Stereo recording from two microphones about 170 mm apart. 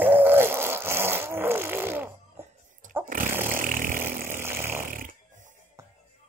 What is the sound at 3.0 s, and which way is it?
Chainsaw, 55° right (ahead or behind).